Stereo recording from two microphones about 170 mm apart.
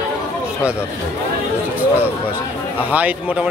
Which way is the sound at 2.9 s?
10° right (ahead or behind).